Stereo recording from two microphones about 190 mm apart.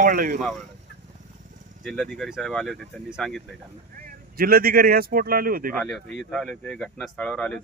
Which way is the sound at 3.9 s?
50° right (ahead or behind).